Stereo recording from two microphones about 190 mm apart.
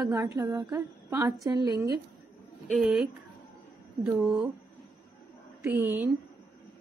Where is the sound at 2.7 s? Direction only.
Centre (ahead or behind).